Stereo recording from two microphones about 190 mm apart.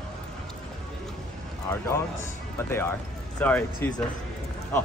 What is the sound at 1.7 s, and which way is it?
Speech, 15° left (ahead or behind).